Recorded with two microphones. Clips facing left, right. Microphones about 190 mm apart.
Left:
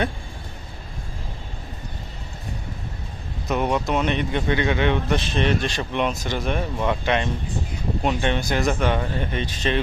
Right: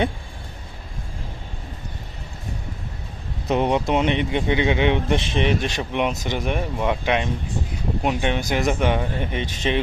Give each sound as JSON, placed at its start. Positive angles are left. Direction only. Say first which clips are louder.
{"t": 3.5, "sound": "speech", "louder": "right 2 dB", "side_deg": -25}